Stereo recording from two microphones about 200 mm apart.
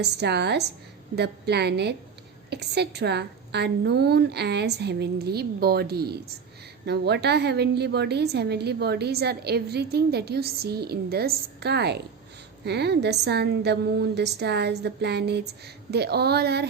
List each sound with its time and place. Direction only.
0.0 s a woman's voice: 55° right (ahead or behind)